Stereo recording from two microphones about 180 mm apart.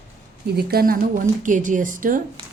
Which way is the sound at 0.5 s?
60° right (ahead or behind).